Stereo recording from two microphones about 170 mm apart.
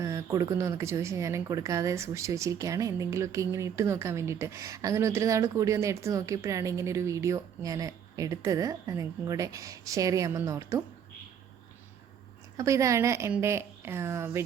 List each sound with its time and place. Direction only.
0.0 s speech: 20° right (ahead or behind)
12.5 s speech: 20° right (ahead or behind)